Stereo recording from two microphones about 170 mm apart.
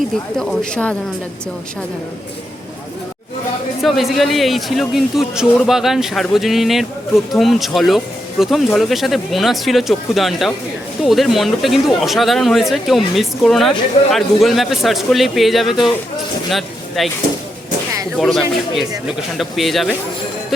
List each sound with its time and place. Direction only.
0.3 s speech: 5° left (ahead or behind)
3.8 s speech: centre (ahead or behind)
18.2 s speech: centre (ahead or behind)